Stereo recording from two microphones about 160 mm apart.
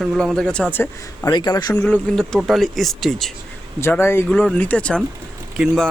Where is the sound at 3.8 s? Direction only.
15° left (ahead or behind).